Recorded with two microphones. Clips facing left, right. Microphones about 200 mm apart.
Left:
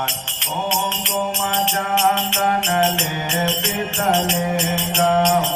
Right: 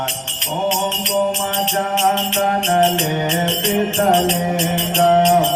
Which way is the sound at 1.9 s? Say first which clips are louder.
Right 1 dB; 35° right (ahead or behind).